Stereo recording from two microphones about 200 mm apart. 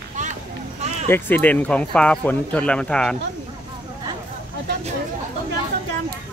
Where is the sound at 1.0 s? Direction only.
10° left (ahead or behind).